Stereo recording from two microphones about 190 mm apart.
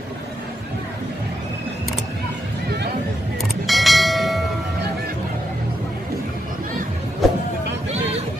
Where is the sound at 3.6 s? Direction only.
Centre (ahead or behind).